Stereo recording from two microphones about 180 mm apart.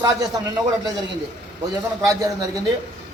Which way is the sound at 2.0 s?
20° right (ahead or behind).